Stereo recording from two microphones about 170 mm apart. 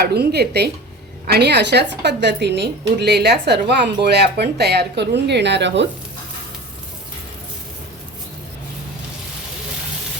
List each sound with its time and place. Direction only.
0.0 s a woman's voice: 70° right (ahead or behind); by 5.9 s 90° right